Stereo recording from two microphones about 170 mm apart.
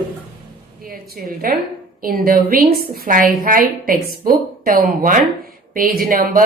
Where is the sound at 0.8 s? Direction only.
55° right (ahead or behind).